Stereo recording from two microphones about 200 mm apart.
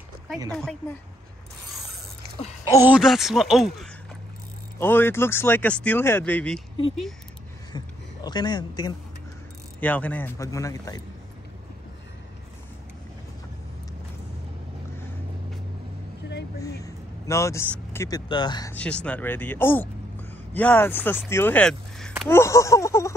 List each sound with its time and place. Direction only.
0.5 s speech: 5° left (ahead or behind)
2.2 s a sound: 50° right (ahead or behind)
2.7 s speech: 10° right (ahead or behind)
4.7 s speech: 10° left (ahead or behind)
7.7 s speech: 20° left (ahead or behind)
9.8 s speech: 10° left (ahead or behind)
16.8 s vehicle: 15° left (ahead or behind)
17.9 s speech: 15° left (ahead or behind)
18.7 s speech: 5° left (ahead or behind)
22.3 s speech: 15° left (ahead or behind)